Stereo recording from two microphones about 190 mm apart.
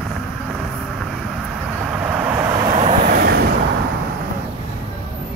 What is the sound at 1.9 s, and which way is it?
Vehicle, 5° right (ahead or behind).